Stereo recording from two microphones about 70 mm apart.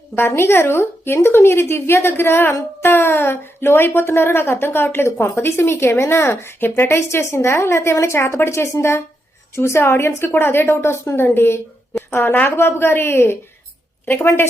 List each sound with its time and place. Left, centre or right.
0.2 s a woman's voice: left